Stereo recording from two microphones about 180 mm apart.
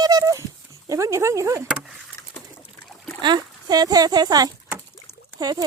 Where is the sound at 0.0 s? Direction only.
20° right (ahead or behind).